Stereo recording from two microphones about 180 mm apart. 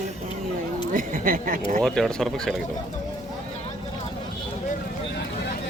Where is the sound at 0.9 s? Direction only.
50° right (ahead or behind).